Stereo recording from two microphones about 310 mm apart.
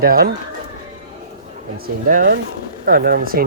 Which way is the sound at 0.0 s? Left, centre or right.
Right.